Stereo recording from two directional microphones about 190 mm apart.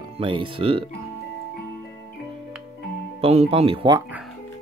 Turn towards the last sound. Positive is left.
turn(degrees=-30)  # may be behind; listen again after turning